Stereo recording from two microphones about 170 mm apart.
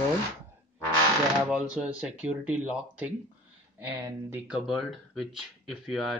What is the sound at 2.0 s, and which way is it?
Speech, 10° right (ahead or behind).